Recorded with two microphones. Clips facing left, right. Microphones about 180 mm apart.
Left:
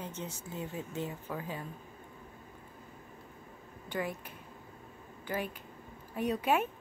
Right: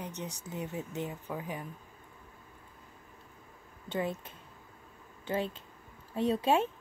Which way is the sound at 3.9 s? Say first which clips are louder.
Right 2 dB; 25° right (ahead or behind).